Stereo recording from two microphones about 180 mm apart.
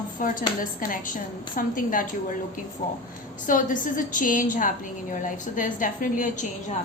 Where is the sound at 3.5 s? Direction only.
50° left (ahead or behind).